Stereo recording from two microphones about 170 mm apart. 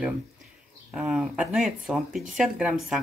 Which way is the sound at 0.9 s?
5° right (ahead or behind).